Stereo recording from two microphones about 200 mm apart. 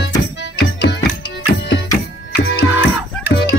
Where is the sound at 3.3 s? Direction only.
60° left (ahead or behind).